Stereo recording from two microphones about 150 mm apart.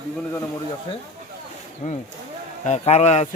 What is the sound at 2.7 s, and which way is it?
Speech, 45° left (ahead or behind).